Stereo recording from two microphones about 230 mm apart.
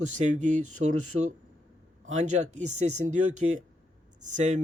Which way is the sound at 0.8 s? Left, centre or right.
Right.